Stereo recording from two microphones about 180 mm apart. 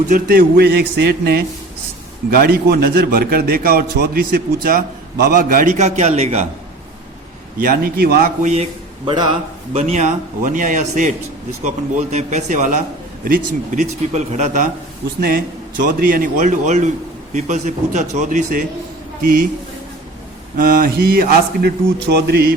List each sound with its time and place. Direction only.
0.1 s a man's voice: 55° right (ahead or behind); by 6.5 s 35° right (ahead or behind)
7.6 s speech: 55° right (ahead or behind)
9.0 s a man's voice: 25° right (ahead or behind)
9.7 s speech: 40° right (ahead or behind)
12.1 s speech: 40° right (ahead or behind)
15.9 s speech: 50° right (ahead or behind)
19.2 s a man's voice: 55° right (ahead or behind)
20.6 s a man's voice: 50° right (ahead or behind)